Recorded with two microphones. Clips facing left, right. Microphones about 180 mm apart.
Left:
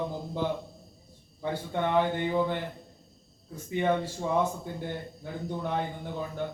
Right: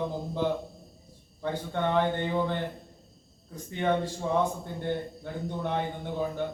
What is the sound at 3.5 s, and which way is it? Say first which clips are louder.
Speech: left 2 dB; 5° left (ahead or behind).